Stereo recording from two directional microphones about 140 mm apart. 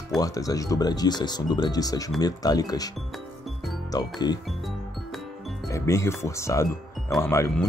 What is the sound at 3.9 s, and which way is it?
Speech, 30° left (ahead or behind).